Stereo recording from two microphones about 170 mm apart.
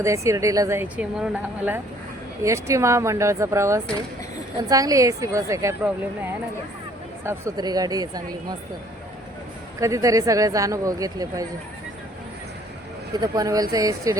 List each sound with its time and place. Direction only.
0.0 s a woman's voice: 15° right (ahead or behind)
9.8 s speech: 20° right (ahead or behind)
13.1 s speech: 20° right (ahead or behind)